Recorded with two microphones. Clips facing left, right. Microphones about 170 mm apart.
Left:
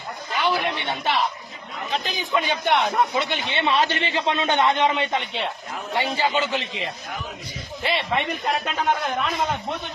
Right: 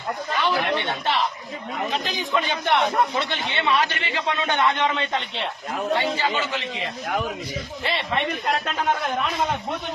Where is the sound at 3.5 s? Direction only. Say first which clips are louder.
Left 1 dB; 25° left (ahead or behind).